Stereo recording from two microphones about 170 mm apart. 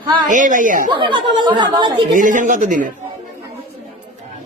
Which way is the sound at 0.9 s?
30° right (ahead or behind).